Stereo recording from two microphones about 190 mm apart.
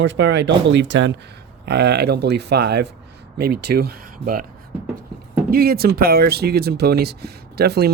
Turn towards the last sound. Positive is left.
turn(degrees=-60)  # may be behind; listen again after turning